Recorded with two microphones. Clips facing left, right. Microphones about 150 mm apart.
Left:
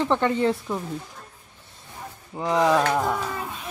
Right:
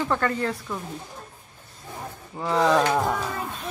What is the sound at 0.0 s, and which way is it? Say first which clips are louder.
Speech: left 3 dB; 20° left (ahead or behind).